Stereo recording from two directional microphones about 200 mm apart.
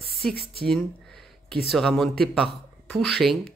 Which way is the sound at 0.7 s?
5° left (ahead or behind).